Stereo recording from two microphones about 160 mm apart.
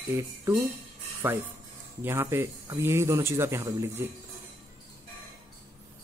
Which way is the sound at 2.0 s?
15° right (ahead or behind).